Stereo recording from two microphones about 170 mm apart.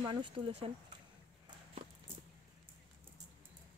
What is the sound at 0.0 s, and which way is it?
Speech, 25° right (ahead or behind).